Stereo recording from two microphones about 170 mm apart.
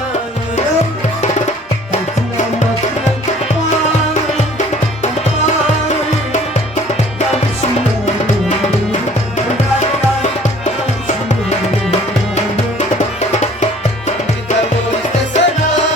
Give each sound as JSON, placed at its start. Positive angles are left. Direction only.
{"t": 13.3, "sound": "music", "side_deg": 40}
{"t": 15.3, "sound": "music", "side_deg": 45}